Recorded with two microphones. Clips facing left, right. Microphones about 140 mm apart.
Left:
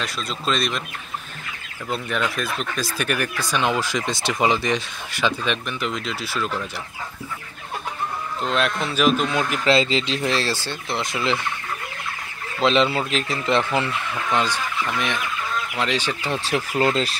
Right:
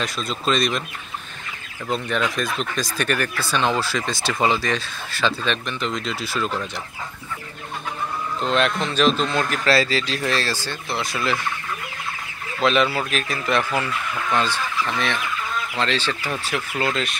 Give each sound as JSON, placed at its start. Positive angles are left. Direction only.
{"t": 0.0, "sound": "speech", "side_deg": 0}
{"t": 1.9, "sound": "speech", "side_deg": 5}
{"t": 8.4, "sound": "a man's voice", "side_deg": 0}
{"t": 12.5, "sound": "a man's voice", "side_deg": 25}
{"t": 16.4, "sound": "speech", "side_deg": 35}